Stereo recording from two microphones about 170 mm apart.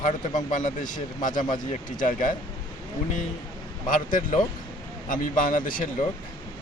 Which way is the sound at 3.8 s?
50° left (ahead or behind).